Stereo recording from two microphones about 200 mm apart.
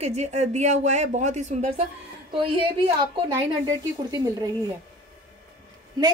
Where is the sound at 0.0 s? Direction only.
35° right (ahead or behind).